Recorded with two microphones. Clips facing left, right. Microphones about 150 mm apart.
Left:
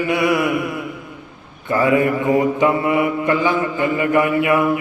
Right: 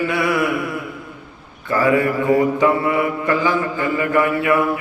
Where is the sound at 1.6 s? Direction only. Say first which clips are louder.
Left 1 dB; 20° left (ahead or behind).